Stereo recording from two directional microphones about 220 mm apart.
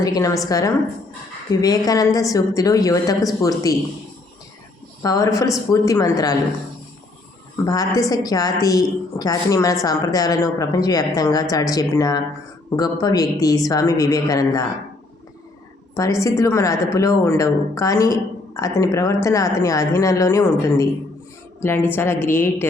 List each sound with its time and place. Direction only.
0.0 s a woman's voice: 15° left (ahead or behind)
5.0 s a woman's voice: 15° left (ahead or behind)
7.6 s a woman's voice: 15° left (ahead or behind)
16.0 s a woman's voice: 15° left (ahead or behind)